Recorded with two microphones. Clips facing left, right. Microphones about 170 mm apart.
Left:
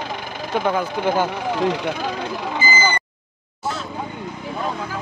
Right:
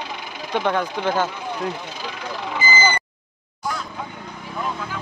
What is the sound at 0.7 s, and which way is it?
Speech, 10° left (ahead or behind).